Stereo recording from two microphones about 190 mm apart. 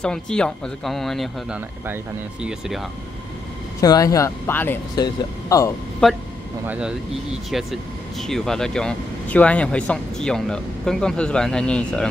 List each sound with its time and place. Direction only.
0.0 s speech: 5° left (ahead or behind)
3.8 s speech: 20° left (ahead or behind)
6.0 s speech: 5° left (ahead or behind)
6.6 s speech: 5° right (ahead or behind)